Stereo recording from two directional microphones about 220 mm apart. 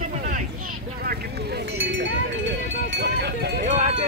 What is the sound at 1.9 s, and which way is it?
Cowbell, 55° right (ahead or behind).